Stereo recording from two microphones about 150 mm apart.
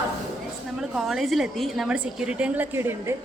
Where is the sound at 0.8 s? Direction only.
Centre (ahead or behind).